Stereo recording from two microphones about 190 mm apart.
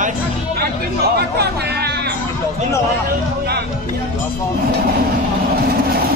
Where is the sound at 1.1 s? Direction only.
60° right (ahead or behind).